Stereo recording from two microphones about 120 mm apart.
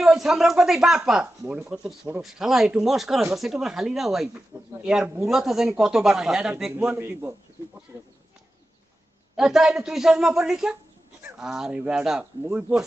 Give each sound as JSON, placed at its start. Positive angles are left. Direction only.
{"t": 0.0, "sound": "a woman's voice", "side_deg": -5}
{"t": 4.5, "sound": "speech", "side_deg": -35}
{"t": 4.8, "sound": "a woman's voice", "side_deg": -5}
{"t": 7.0, "sound": "speech", "side_deg": -20}
{"t": 7.9, "sound": "a sound", "side_deg": -25}
{"t": 9.4, "sound": "a woman's voice", "side_deg": -5}